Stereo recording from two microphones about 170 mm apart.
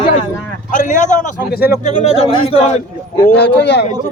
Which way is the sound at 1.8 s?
40° left (ahead or behind).